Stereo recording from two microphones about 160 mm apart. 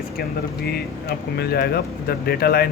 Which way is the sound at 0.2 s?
80° left.